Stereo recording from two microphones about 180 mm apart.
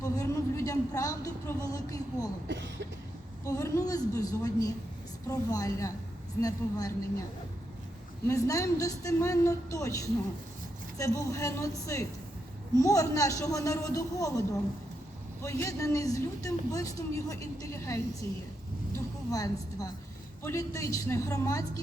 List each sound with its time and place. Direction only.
0.0 s a woman's voice: 20° left (ahead or behind)
2.5 s a sound: 80° right
3.4 s a woman's voice: 15° left (ahead or behind)
8.3 s speech: 20° left (ahead or behind)
19.3 s a woman's voice: 20° left (ahead or behind)